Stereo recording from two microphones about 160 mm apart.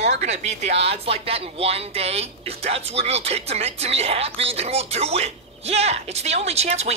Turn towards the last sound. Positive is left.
turn(degrees=-40)  # may be behind; listen again after turning